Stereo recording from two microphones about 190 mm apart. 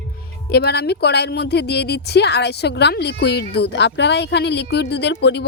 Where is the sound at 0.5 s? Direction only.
60° left (ahead or behind).